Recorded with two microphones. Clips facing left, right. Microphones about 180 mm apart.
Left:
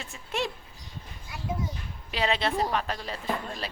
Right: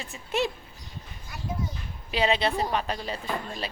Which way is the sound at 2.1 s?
Centre (ahead or behind).